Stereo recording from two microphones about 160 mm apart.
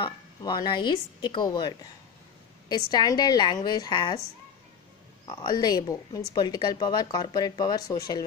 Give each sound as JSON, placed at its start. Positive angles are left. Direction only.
{"t": 0.0, "sound": "a woman's voice", "side_deg": 30}
{"t": 2.9, "sound": "a woman's voice", "side_deg": 25}
{"t": 5.2, "sound": "a woman's voice", "side_deg": 25}